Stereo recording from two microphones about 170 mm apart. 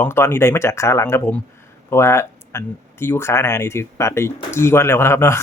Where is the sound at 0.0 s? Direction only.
15° left (ahead or behind).